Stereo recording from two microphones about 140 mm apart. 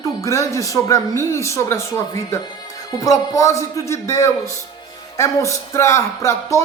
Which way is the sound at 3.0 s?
25° left (ahead or behind).